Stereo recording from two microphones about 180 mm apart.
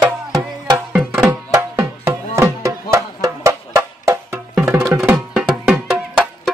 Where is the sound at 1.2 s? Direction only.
15° right (ahead or behind).